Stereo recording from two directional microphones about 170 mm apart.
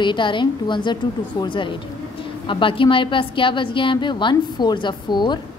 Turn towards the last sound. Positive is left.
turn(degrees=25)  # may be behind; listen again after turning